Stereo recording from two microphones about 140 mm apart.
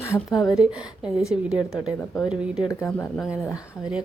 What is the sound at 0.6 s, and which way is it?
A woman's voice, 10° right (ahead or behind).